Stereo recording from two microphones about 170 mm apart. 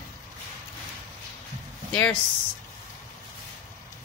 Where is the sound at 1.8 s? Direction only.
5° left (ahead or behind).